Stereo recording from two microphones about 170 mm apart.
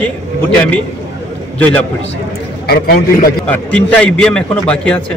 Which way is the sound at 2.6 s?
65° left (ahead or behind).